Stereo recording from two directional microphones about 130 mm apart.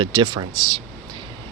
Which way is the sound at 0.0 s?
35° right (ahead or behind).